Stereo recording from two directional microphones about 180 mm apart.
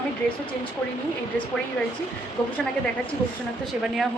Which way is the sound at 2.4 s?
5° left (ahead or behind).